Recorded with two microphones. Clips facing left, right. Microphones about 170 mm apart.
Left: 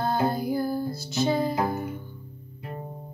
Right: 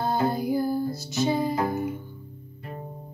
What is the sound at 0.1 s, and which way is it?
Music, 15° right (ahead or behind).